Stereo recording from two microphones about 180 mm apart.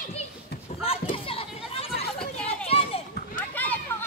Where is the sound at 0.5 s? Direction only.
65° left (ahead or behind).